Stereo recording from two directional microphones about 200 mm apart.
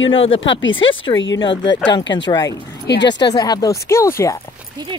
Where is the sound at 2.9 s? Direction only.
60° left (ahead or behind).